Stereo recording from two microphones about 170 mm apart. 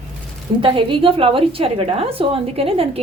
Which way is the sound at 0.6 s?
30° right (ahead or behind).